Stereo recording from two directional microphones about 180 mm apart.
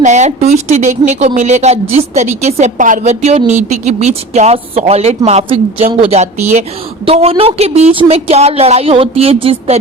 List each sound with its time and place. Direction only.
0.0 s speech: 40° right (ahead or behind)